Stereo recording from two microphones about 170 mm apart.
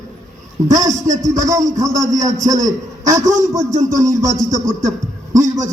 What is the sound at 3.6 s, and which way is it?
Music, 45° right (ahead or behind).